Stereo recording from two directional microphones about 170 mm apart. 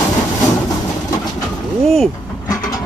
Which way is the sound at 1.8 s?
Centre (ahead or behind).